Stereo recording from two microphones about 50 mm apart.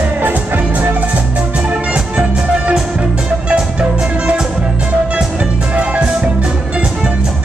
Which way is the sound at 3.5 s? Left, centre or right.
Right.